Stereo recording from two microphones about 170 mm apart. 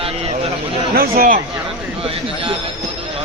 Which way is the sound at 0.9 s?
60° right (ahead or behind).